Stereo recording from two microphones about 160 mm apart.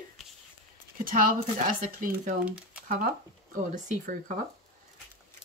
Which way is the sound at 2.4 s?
10° right (ahead or behind).